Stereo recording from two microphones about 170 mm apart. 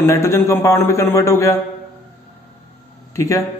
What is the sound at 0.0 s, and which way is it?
A man's voice, 15° left (ahead or behind).